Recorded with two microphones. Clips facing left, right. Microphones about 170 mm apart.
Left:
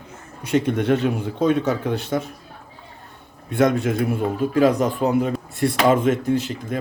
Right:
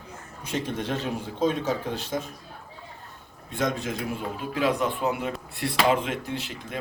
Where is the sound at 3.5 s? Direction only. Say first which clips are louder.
Left 9 dB; 60° left (ahead or behind).